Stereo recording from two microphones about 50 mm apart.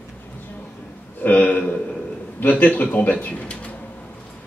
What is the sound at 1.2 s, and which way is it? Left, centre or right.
A man's voice, left.